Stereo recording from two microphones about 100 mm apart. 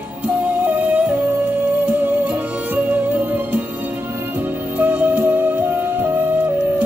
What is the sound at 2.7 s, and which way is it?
Music, 15° right (ahead or behind).